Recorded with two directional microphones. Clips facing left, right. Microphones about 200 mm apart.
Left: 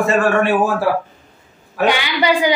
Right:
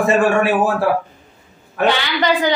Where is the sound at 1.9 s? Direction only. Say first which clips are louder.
Left 1 dB; 10° left (ahead or behind).